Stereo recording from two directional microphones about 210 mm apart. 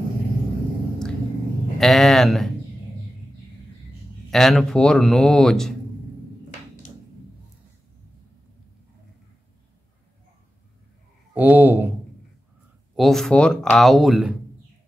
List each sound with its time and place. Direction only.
1.8 s speech: centre (ahead or behind)
4.3 s speech: centre (ahead or behind)
11.3 s speech: 10° right (ahead or behind)
12.9 s speech: centre (ahead or behind)